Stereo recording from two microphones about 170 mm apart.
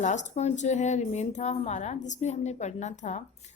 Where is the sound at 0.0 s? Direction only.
45° left (ahead or behind).